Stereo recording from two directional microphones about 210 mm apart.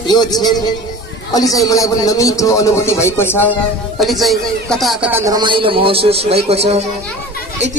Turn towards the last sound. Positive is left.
turn(degrees=-30)  # may be behind; listen again after turning